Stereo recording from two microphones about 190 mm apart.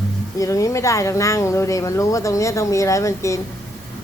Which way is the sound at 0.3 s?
15° left (ahead or behind).